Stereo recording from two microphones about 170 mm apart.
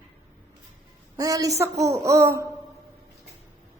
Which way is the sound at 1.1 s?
20° right (ahead or behind).